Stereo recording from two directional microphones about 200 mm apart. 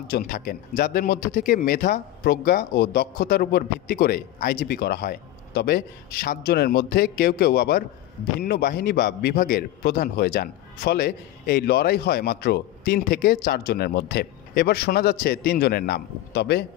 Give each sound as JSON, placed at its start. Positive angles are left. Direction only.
{"t": 0.1, "sound": "a man's voice", "side_deg": 50}